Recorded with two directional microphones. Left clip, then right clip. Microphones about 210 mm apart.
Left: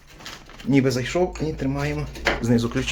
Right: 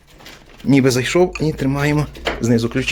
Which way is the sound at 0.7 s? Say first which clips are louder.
Right 6 dB; 55° right (ahead or behind).